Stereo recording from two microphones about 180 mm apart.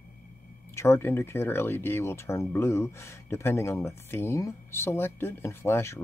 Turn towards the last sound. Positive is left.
turn(degrees=15)  # may be behind; listen again after turning